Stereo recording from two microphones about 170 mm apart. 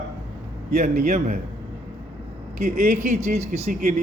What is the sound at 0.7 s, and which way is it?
Speech, 40° right (ahead or behind).